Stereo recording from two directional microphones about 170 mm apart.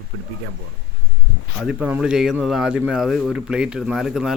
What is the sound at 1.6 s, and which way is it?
Speech, 5° right (ahead or behind).